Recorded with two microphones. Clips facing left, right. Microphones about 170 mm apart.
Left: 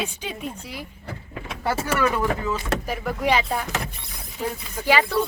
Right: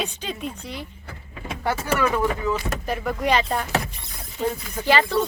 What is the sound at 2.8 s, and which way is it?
Speech, 5° left (ahead or behind).